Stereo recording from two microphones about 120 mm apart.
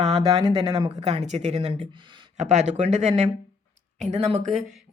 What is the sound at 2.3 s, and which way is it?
Speech, 75° right (ahead or behind).